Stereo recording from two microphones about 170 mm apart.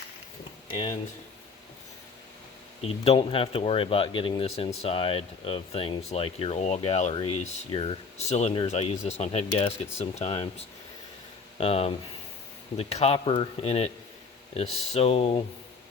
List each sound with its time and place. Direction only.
0.7 s speech: 30° left (ahead or behind)
2.8 s speech: 35° left (ahead or behind)
14.9 s speech: 35° left (ahead or behind)